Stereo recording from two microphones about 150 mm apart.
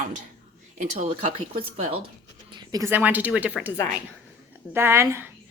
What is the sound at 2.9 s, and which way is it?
Speech, 10° right (ahead or behind).